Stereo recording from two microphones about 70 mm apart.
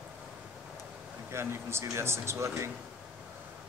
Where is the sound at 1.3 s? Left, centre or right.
Right.